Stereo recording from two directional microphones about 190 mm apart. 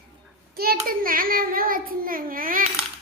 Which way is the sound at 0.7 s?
50° right (ahead or behind).